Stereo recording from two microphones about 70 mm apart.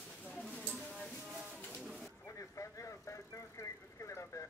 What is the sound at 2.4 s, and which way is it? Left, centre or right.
Vehicle, left.